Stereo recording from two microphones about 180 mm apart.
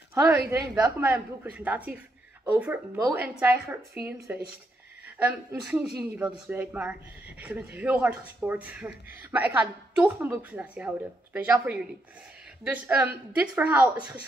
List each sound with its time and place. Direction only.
0.1 s a woman's voice: 15° right (ahead or behind)